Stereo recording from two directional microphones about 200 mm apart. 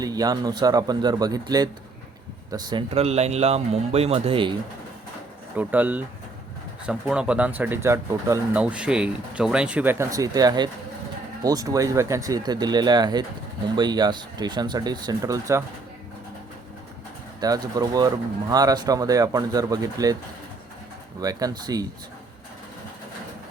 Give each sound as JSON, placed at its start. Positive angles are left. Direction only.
{"t": 0.0, "sound": "speech", "side_deg": -20}
{"t": 5.5, "sound": "speech", "side_deg": -10}
{"t": 17.4, "sound": "speech", "side_deg": -20}
{"t": 21.2, "sound": "speech", "side_deg": -20}